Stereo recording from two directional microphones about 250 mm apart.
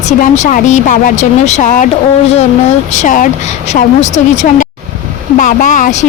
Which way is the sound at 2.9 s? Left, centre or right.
Left.